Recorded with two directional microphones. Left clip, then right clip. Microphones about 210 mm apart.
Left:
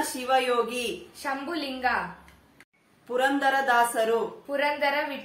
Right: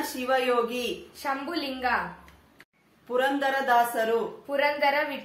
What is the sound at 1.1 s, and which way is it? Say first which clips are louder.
Speech: right 2 dB; 10° right (ahead or behind).